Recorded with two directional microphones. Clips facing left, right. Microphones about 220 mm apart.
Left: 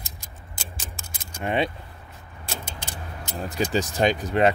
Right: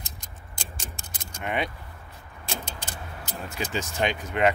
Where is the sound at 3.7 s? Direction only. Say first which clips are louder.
Left 5 dB; 35° left (ahead or behind).